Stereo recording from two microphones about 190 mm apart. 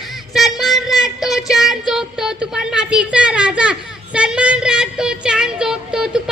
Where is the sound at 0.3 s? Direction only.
Centre (ahead or behind).